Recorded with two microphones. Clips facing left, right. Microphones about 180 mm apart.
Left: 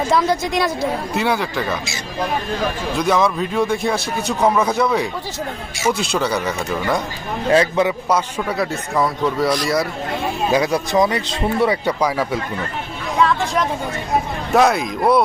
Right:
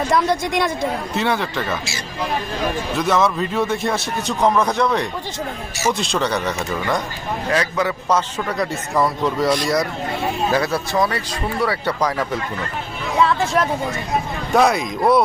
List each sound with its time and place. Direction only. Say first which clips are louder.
0.1 s a man's voice: left 1 dB; centre (ahead or behind)
3.0 s a man's voice: left 1 dB; centre (ahead or behind)
7.5 s speech: left 6 dB; 25° left (ahead or behind)
8.1 s a man's voice: left 1 dB; 5° left (ahead or behind)
10.5 s speech: left 6 dB; 15° left (ahead or behind)
11.9 s speech: left 2 dB; 10° left (ahead or behind)
13.2 s a woman's voice: even; 5° right (ahead or behind)